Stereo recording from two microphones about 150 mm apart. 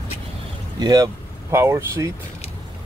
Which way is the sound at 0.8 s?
25° right (ahead or behind).